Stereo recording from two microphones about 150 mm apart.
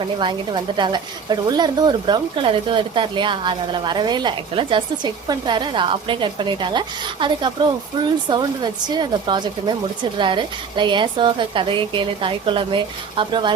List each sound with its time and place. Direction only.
0.0 s a woman's voice: 30° right (ahead or behind)